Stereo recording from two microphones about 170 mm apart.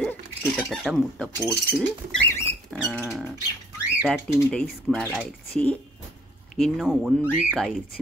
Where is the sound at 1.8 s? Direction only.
15° left (ahead or behind).